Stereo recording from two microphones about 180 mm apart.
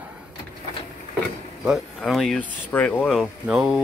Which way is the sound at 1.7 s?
Centre (ahead or behind).